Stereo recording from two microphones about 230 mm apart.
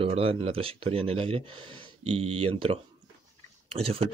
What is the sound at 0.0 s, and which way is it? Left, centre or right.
Speech, right.